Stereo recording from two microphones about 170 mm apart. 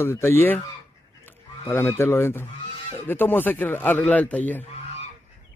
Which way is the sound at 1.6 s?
15° left (ahead or behind).